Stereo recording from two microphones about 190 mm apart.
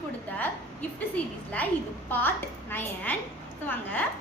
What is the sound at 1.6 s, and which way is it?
A woman's voice, 10° left (ahead or behind).